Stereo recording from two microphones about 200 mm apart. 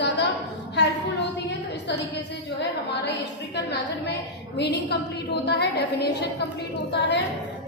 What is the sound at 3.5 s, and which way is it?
A woman's voice, 60° left (ahead or behind).